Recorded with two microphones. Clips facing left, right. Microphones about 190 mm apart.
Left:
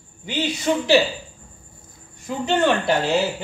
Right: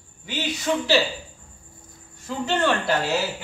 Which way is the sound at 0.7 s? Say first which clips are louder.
Left 2 dB; 25° left (ahead or behind).